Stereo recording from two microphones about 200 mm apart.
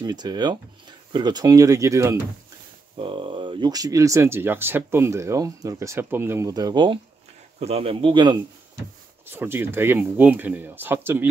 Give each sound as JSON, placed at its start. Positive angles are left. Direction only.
{"t": 0.0, "sound": "speech", "side_deg": -20}
{"t": 9.2, "sound": "speech", "side_deg": -10}